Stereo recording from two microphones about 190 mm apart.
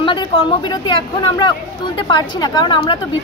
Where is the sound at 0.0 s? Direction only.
25° left (ahead or behind).